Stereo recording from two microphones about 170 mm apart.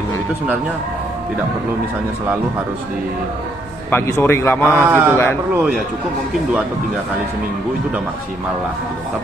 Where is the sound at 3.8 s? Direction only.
10° left (ahead or behind).